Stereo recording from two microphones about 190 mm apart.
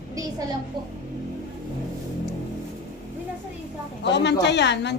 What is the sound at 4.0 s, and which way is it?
Speech, 65° left (ahead or behind).